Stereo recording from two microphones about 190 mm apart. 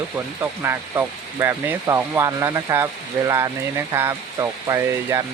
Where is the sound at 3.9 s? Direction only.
15° right (ahead or behind).